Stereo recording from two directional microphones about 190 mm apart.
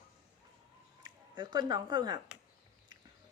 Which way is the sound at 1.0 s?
25° right (ahead or behind).